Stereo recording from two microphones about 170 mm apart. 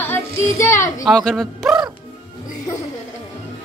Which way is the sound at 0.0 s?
15° left (ahead or behind).